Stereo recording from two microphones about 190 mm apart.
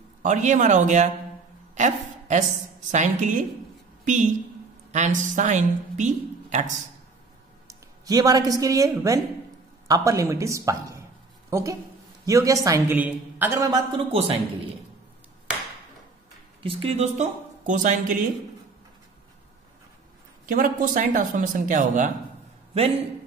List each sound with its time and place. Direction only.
0.2 s a woman's voice: 40° right (ahead or behind)
7.6 s a woman's voice: 20° right (ahead or behind)
12.3 s a woman's voice: 15° right (ahead or behind)
14.1 s a woman's voice: 30° right (ahead or behind)
16.6 s a woman's voice: 30° right (ahead or behind)
20.4 s speech: 45° right (ahead or behind)